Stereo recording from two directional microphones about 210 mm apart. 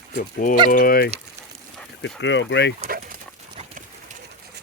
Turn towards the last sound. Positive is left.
turn(degrees=-35)  # may be behind; listen again after turning